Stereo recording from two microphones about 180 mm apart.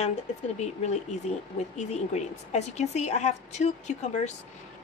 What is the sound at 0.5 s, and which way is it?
Speech, 40° left (ahead or behind).